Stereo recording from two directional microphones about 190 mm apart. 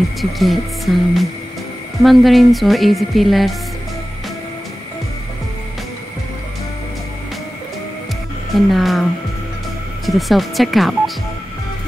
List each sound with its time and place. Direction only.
0.2 s music: centre (ahead or behind)
8.5 s music: centre (ahead or behind)
10.0 s music: centre (ahead or behind)